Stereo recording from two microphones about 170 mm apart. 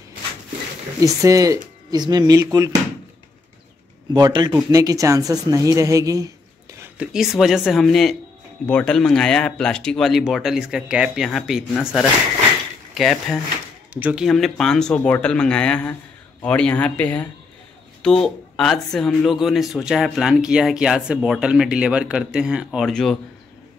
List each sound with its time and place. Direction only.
1.0 s a woman's voice: 20° right (ahead or behind)
4.1 s a woman's voice: 25° right (ahead or behind)
6.8 s speech: 5° right (ahead or behind)